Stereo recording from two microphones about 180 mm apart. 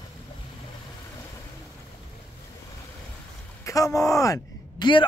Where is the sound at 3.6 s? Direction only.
15° left (ahead or behind).